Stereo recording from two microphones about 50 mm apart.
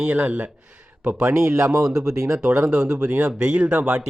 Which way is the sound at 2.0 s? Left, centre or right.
Right.